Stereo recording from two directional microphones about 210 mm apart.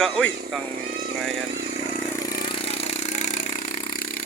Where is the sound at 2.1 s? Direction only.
20° left (ahead or behind); by 3.7 s 40° left (ahead or behind).